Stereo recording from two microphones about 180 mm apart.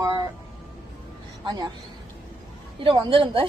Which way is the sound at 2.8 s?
30° right (ahead or behind).